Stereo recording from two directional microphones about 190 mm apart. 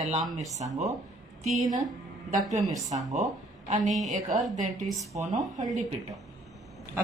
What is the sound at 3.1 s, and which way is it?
Speech, 35° right (ahead or behind).